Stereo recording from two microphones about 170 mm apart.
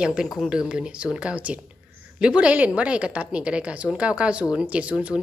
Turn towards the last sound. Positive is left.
turn(degrees=-5)  # may be behind; listen again after turning